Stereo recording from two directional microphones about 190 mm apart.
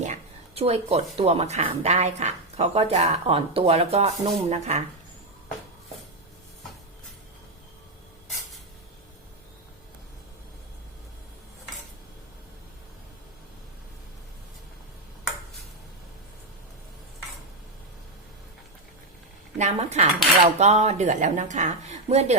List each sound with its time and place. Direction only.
0.0 s speech: 35° right (ahead or behind)
19.5 s dishes: 35° right (ahead or behind)